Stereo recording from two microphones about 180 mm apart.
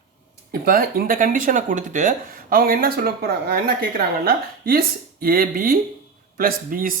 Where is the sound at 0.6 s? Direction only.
55° right (ahead or behind).